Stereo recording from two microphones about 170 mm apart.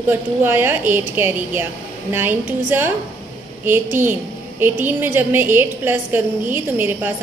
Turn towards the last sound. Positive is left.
turn(degrees=-10)  # may be behind; listen again after turning